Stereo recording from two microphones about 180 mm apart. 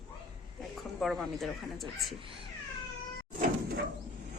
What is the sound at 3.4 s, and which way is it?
Sliding door, 55° right (ahead or behind).